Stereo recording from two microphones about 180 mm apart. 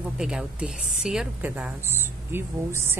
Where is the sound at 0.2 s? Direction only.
5° right (ahead or behind).